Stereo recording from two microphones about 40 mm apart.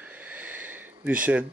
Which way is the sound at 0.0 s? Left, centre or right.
Right.